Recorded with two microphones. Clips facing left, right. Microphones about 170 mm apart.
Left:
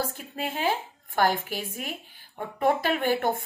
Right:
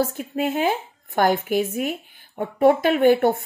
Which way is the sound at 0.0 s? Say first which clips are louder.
Right 9 dB; 45° right (ahead or behind).